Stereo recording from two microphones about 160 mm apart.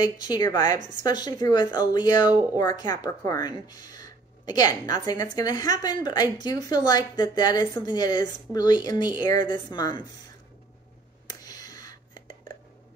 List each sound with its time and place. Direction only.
0.0 s speech: 25° left (ahead or behind)
11.2 s whispering: 25° left (ahead or behind)